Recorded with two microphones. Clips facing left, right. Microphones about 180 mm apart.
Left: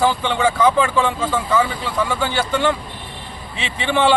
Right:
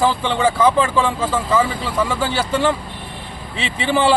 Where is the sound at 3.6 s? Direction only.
35° right (ahead or behind).